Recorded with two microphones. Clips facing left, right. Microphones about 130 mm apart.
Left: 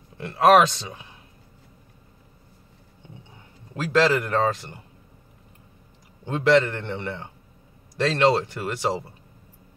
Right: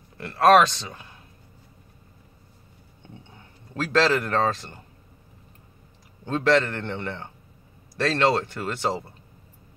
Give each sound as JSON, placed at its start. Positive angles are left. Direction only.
{"t": 0.2, "sound": "speech", "side_deg": 15}
{"t": 3.7, "sound": "speech", "side_deg": 10}
{"t": 6.2, "sound": "speech", "side_deg": 15}